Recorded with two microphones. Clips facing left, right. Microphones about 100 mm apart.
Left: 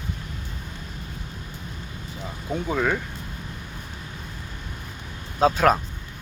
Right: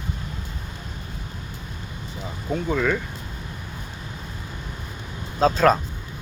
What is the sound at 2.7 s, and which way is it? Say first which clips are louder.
Speech: right 1 dB; 15° left (ahead or behind).